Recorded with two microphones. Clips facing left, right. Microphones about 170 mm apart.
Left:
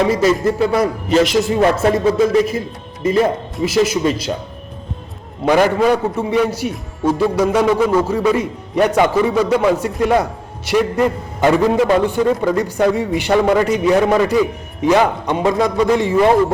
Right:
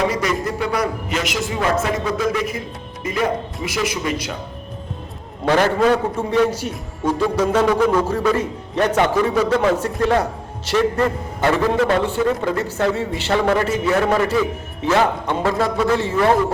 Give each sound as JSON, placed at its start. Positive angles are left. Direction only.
{"t": 0.1, "sound": "speech", "side_deg": 25}
{"t": 5.5, "sound": "a man's voice", "side_deg": 15}